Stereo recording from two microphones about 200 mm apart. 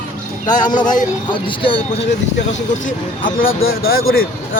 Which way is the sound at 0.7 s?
20° left (ahead or behind).